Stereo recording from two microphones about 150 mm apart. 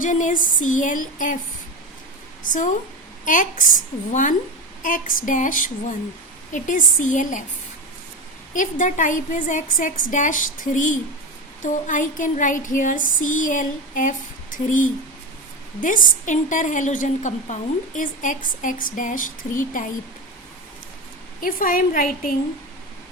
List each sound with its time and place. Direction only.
0.0 s a woman's voice: 60° left (ahead or behind)
2.4 s a woman's voice: 60° left (ahead or behind)
8.5 s a woman's voice: 60° left (ahead or behind)
21.4 s a woman's voice: 70° left (ahead or behind)